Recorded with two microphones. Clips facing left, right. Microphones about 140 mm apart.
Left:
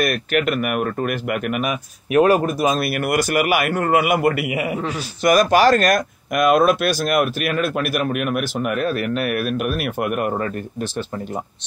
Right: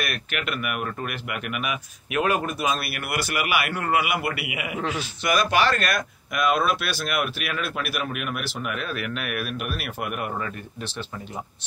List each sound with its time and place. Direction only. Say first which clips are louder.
0.0 s speech: left 10 dB; 40° left (ahead or behind)